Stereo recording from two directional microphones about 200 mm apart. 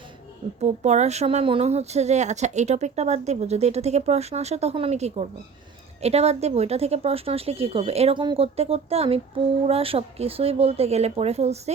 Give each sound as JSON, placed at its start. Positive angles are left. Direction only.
{"t": 0.6, "sound": "speech", "side_deg": -35}